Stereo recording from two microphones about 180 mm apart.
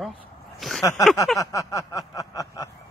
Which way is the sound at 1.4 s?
20° left (ahead or behind).